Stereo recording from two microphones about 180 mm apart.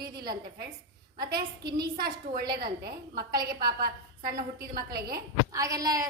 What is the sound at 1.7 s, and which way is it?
A woman's voice, 60° right (ahead or behind).